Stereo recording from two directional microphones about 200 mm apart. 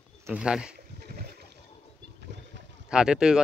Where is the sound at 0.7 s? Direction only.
50° right (ahead or behind).